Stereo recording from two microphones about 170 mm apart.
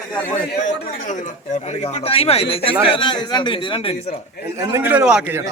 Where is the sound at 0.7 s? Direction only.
45° left (ahead or behind).